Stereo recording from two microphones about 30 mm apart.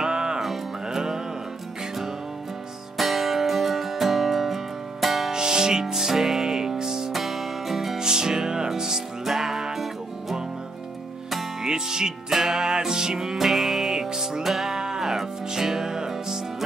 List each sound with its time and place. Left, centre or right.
0.0 s music: right
3.0 s music: centre
5.3 s music: right
7.1 s music: centre
8.0 s music: right
11.6 s music: right
13.4 s music: centre